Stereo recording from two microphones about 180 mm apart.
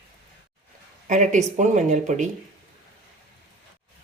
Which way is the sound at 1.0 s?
45° right (ahead or behind).